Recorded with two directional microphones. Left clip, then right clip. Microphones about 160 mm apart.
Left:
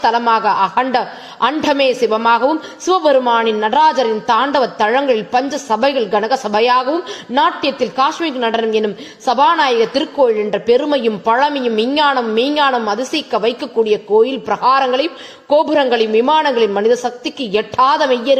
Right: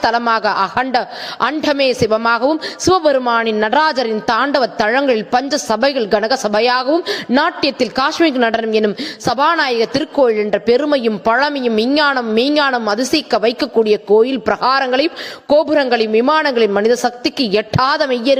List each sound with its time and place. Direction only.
0.0 s a woman's voice: 35° right (ahead or behind)